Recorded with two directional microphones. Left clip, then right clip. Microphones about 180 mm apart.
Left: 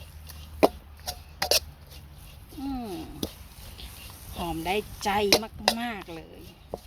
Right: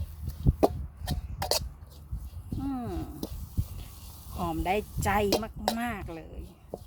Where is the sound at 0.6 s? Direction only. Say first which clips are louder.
Left 4 dB; 5° left (ahead or behind).